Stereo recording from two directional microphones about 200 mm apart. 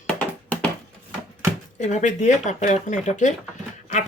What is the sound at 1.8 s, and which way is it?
Speech, 35° left (ahead or behind).